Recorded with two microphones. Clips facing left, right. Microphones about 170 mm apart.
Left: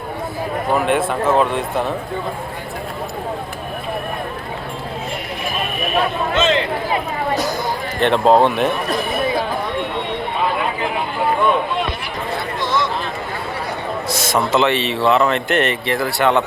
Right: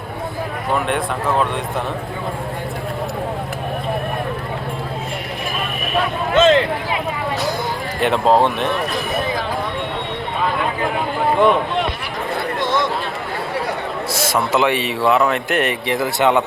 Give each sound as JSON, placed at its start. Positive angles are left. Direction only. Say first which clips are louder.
{"t": 0.9, "sound": "speech", "louder": "left 3 dB", "side_deg": 5}
{"t": 6.3, "sound": "speech", "louder": "right 6 dB", "side_deg": -50}
{"t": 8.0, "sound": "speech", "louder": "left 2 dB", "side_deg": 0}
{"t": 12.5, "sound": "a sound", "louder": "right 1 dB", "side_deg": -55}
{"t": 14.1, "sound": "a man's voice", "louder": "left 1 dB", "side_deg": -10}